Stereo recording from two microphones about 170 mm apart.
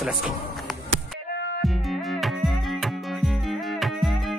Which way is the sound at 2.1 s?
Centre (ahead or behind).